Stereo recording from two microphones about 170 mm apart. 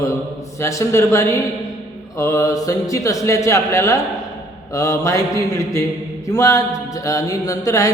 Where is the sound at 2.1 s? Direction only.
20° left (ahead or behind).